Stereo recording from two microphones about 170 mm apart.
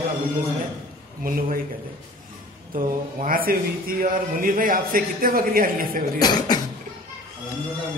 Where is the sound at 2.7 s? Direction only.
55° right (ahead or behind).